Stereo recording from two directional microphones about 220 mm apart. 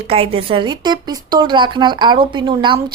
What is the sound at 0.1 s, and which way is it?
Speech, 25° right (ahead or behind).